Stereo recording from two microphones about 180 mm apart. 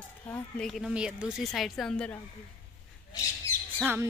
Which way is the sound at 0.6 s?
Centre (ahead or behind).